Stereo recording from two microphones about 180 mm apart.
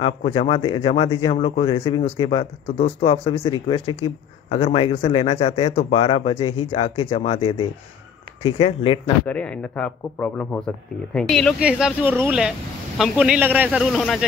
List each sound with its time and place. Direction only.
0.0 s a man's voice: 30° left (ahead or behind)
9.2 s speech: 5° left (ahead or behind)